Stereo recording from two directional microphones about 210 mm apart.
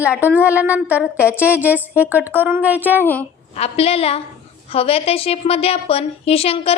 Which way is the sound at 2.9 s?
10° left (ahead or behind).